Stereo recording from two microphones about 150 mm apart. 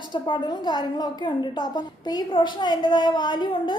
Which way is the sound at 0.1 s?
30° left (ahead or behind).